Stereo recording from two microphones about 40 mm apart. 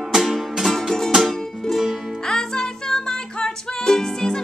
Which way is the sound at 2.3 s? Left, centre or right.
Centre.